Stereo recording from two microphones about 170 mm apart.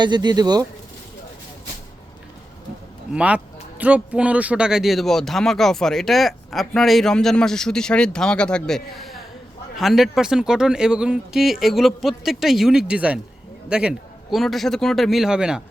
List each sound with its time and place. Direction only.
0.0 s speech: 25° right (ahead or behind)
3.1 s speech: 5° right (ahead or behind)